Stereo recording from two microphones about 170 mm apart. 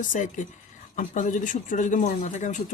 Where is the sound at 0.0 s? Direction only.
50° left (ahead or behind).